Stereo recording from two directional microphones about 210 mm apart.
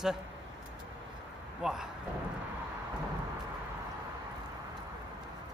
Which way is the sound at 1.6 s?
Centre (ahead or behind).